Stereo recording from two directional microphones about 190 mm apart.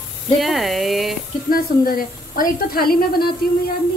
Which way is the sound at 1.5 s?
50° left (ahead or behind).